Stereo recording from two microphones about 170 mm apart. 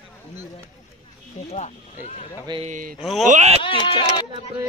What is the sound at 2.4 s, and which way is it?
Speech, 30° right (ahead or behind).